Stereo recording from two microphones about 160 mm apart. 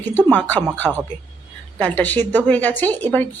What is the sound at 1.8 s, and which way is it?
A woman's voice, 10° left (ahead or behind).